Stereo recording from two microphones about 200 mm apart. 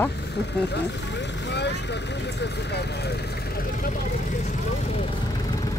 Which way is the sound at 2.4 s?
55° left (ahead or behind).